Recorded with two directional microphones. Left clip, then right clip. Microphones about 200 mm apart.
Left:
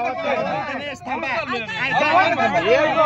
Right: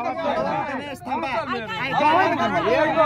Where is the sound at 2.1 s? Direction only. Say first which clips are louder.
Left 1 dB; 35° left (ahead or behind).